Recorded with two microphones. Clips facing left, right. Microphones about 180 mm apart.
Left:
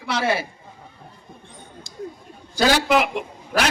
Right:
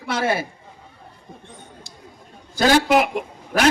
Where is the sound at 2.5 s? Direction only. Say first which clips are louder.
Right 2 dB; 50° right (ahead or behind).